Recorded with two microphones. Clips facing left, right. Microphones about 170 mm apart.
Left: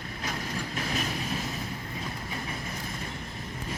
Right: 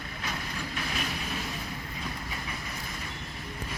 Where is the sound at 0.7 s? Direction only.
35° left (ahead or behind).